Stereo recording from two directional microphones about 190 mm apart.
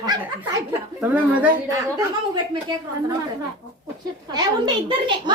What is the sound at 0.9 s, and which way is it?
Speech, 5° right (ahead or behind).